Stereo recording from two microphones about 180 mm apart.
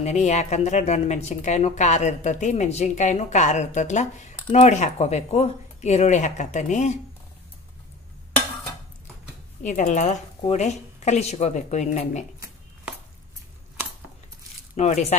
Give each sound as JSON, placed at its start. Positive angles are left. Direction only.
{"t": 0.0, "sound": "speech", "side_deg": 40}
{"t": 9.6, "sound": "speech", "side_deg": 45}
{"t": 14.8, "sound": "speech", "side_deg": 40}